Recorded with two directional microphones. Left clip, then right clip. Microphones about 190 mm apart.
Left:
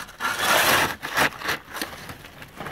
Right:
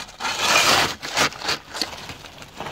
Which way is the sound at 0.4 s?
10° left (ahead or behind).